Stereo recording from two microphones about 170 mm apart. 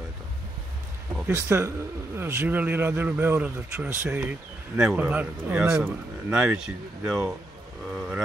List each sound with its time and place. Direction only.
1.1 s speech: 15° right (ahead or behind)